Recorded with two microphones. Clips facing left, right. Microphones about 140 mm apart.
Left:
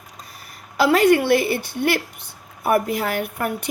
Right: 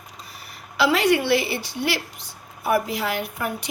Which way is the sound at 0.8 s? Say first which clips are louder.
Left 4 dB; 50° left (ahead or behind).